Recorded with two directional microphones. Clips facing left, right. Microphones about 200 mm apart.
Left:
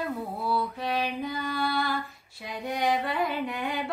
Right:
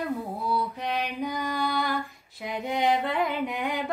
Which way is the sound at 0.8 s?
15° right (ahead or behind).